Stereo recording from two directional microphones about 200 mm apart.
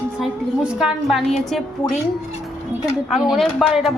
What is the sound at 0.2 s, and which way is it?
A woman's voice, 5° right (ahead or behind).